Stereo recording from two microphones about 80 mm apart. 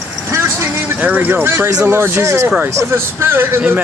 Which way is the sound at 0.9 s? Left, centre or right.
Right.